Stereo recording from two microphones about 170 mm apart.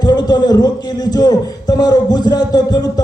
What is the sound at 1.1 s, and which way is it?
A man's voice, 20° left (ahead or behind).